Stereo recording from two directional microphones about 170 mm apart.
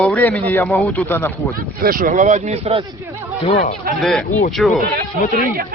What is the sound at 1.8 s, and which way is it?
Speech, 60° right (ahead or behind).